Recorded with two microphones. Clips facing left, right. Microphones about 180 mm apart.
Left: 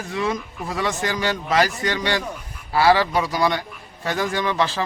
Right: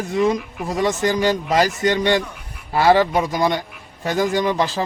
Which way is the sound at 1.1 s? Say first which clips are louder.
Right 5 dB; 45° right (ahead or behind).